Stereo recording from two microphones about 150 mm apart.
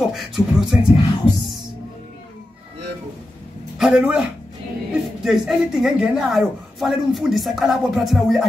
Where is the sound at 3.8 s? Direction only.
5° right (ahead or behind).